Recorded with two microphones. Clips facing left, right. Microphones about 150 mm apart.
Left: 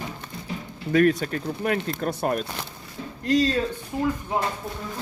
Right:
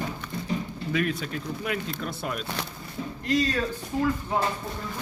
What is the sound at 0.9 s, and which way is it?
Speech, 50° left (ahead or behind).